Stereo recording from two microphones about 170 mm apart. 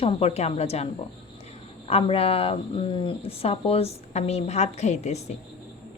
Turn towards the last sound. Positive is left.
turn(degrees=40)  # may be behind; listen again after turning